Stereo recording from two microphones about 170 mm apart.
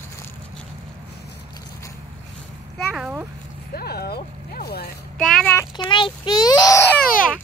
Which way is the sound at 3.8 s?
70° left (ahead or behind).